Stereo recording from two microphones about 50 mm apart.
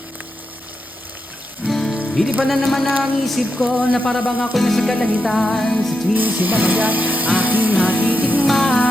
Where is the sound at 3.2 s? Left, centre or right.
Centre.